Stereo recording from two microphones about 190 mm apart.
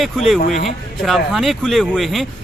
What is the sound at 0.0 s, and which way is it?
Speech, centre (ahead or behind).